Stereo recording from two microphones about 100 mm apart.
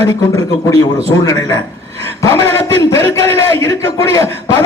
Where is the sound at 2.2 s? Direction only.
25° left (ahead or behind).